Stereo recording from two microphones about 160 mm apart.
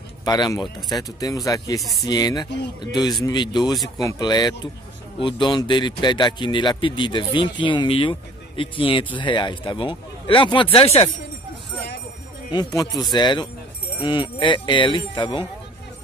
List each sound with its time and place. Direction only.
0.2 s speech: 25° left (ahead or behind)
1.8 s speech: centre (ahead or behind)
2.0 s speech: 25° left (ahead or behind)
12.5 s speech: 20° left (ahead or behind)